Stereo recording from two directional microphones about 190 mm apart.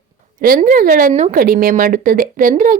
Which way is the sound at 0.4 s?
45° right (ahead or behind).